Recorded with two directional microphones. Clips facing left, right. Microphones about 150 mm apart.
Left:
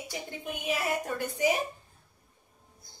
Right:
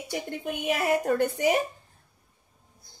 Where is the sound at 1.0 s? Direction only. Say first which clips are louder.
Right 5 dB; 55° right (ahead or behind).